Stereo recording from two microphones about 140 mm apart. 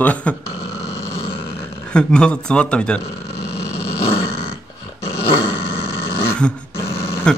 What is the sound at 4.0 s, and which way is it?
Dog, 45° left (ahead or behind).